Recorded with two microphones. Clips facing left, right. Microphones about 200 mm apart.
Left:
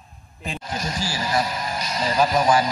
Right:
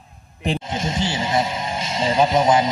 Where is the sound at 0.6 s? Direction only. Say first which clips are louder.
Right 4 dB; 25° right (ahead or behind).